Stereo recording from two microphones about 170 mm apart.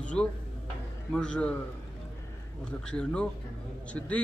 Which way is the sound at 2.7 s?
5° left (ahead or behind).